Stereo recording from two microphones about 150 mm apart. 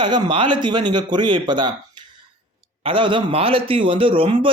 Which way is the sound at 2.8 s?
35° right (ahead or behind).